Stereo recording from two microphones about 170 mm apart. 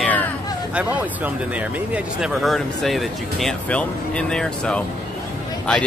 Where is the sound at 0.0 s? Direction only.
10° left (ahead or behind).